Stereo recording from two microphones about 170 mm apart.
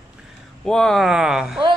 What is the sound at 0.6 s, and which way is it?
A man's voice, 5° left (ahead or behind).